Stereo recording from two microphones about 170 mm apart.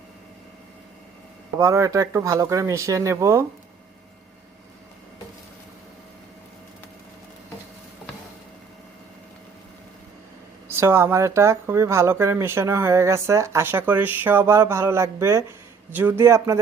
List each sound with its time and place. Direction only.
1.5 s speech: 20° right (ahead or behind)
10.7 s speech: 15° right (ahead or behind)